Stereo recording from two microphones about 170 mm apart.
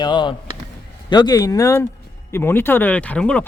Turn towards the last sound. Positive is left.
turn(degrees=5)  # may be behind; listen again after turning